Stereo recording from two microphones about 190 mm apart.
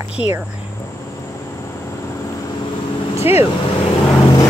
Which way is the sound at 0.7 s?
15° left (ahead or behind).